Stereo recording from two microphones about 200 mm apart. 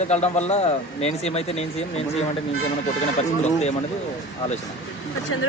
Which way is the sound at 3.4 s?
35° left (ahead or behind).